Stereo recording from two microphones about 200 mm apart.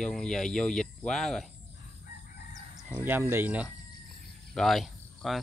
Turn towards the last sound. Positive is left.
turn(degrees=0)  # may be behind; listen again after turning